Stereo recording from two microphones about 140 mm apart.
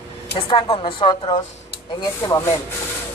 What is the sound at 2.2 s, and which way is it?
Speech, 20° left (ahead or behind).